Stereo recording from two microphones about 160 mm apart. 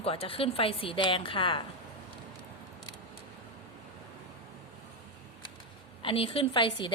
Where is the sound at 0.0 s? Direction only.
35° left (ahead or behind).